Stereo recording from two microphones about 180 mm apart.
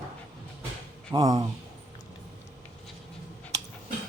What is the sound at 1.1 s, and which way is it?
Speech, 20° right (ahead or behind).